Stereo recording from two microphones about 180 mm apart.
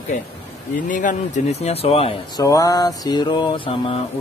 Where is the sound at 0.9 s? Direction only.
45° left (ahead or behind).